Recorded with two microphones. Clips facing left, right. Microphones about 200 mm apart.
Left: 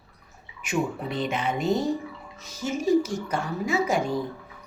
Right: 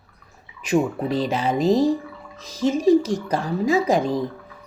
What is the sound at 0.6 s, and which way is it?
Speech, 35° right (ahead or behind).